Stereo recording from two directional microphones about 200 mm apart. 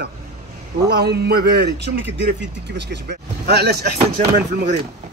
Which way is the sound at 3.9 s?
40° right (ahead or behind).